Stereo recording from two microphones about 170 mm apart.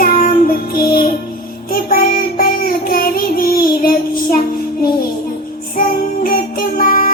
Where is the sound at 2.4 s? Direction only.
60° left (ahead or behind).